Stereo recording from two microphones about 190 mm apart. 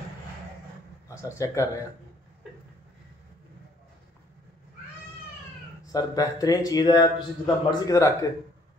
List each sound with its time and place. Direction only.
1.2 s speech: 15° left (ahead or behind)
5.9 s speech: 20° left (ahead or behind)